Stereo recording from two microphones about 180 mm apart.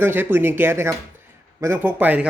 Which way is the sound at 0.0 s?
10° right (ahead or behind).